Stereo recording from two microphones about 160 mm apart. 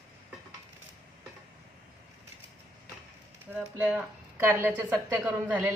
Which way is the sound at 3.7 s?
10° right (ahead or behind).